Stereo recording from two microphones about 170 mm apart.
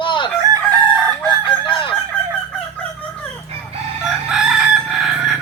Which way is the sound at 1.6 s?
30° left (ahead or behind).